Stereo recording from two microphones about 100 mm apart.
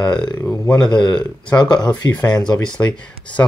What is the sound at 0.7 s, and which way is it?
Speech, 10° left (ahead or behind).